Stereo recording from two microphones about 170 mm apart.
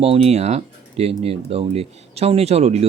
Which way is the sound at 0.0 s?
35° right (ahead or behind).